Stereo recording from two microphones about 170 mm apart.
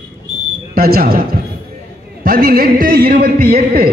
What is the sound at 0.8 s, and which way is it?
A man's voice, 60° right (ahead or behind).